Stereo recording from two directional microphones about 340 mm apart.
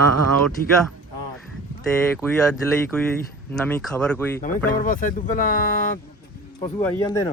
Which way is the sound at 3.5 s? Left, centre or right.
Centre.